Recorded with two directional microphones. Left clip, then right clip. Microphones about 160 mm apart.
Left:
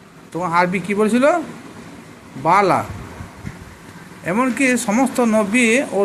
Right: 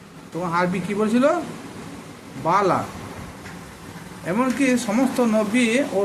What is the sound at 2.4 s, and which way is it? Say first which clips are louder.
Speech: left 5 dB; 40° left (ahead or behind).